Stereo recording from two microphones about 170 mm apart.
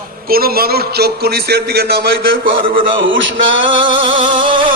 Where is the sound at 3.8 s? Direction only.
30° right (ahead or behind).